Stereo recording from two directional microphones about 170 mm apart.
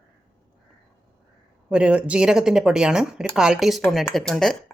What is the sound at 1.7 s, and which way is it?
Speech, 5° right (ahead or behind).